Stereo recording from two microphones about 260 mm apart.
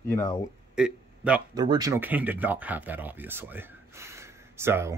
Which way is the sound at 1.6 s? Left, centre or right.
Centre.